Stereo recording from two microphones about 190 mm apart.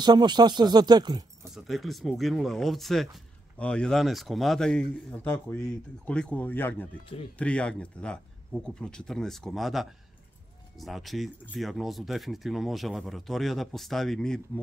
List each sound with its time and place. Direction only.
0.0 s speech: 25° right (ahead or behind)
1.5 s speech: centre (ahead or behind)